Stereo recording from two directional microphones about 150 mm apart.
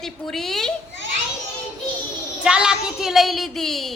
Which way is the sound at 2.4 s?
5° right (ahead or behind).